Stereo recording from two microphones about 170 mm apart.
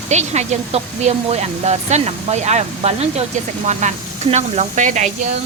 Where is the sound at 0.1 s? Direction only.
40° right (ahead or behind).